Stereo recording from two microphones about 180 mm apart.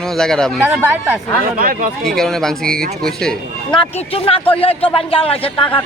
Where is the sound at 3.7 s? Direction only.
30° left (ahead or behind).